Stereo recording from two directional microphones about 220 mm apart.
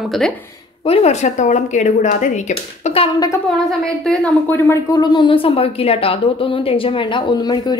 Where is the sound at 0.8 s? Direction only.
30° left (ahead or behind).